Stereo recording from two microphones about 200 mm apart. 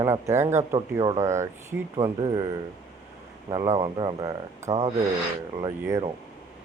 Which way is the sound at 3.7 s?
25° right (ahead or behind).